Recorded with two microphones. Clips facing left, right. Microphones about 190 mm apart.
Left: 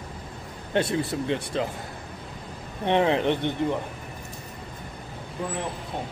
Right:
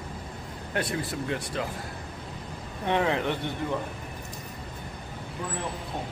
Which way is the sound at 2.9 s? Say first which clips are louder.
Left 4 dB; 20° left (ahead or behind).